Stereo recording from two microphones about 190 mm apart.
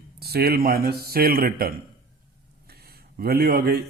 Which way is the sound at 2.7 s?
55° right (ahead or behind).